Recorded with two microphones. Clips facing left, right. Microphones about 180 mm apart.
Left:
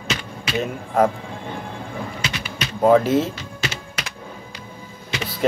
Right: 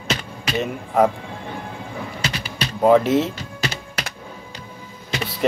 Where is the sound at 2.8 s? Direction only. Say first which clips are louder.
Even; centre (ahead or behind).